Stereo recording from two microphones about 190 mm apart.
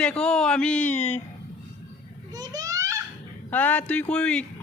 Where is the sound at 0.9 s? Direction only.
35° left (ahead or behind).